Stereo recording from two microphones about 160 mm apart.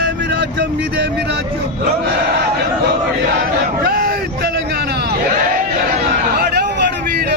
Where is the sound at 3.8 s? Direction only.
70° right (ahead or behind).